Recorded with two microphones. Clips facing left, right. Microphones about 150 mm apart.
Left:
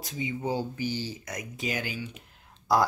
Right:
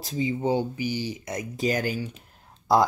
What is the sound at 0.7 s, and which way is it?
Speech, 15° right (ahead or behind).